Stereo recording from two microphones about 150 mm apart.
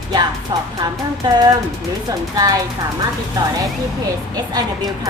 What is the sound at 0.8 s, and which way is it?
Speech, 30° right (ahead or behind).